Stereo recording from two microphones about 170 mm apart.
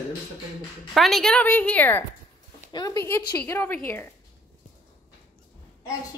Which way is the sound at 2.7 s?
20° left (ahead or behind).